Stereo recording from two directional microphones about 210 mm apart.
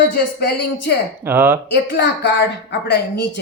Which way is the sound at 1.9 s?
60° left (ahead or behind).